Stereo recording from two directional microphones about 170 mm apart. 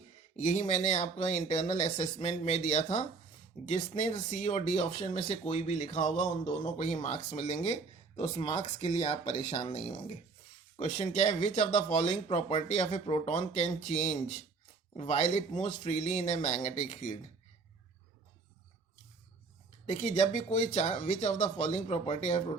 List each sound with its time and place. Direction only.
0.3 s speech: 45° left (ahead or behind); by 8.9 s 30° left (ahead or behind)
9.3 s speech: 40° left (ahead or behind)
19.9 s speech: 40° left (ahead or behind)